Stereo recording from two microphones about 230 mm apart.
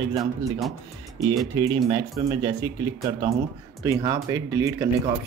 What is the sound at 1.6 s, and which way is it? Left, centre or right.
Speech, centre.